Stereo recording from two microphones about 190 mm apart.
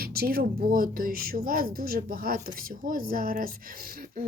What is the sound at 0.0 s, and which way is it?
Speech, 55° right (ahead or behind).